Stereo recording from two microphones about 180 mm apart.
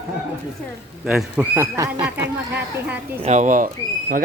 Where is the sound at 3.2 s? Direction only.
40° right (ahead or behind).